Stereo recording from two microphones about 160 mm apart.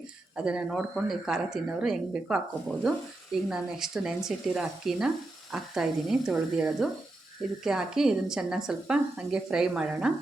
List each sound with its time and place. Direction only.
0.3 s speech: 5° right (ahead or behind)